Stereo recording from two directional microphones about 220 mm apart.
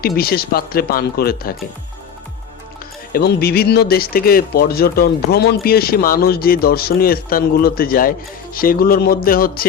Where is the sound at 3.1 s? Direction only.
45° left (ahead or behind).